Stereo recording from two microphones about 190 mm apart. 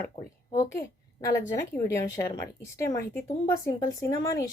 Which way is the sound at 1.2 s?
15° left (ahead or behind).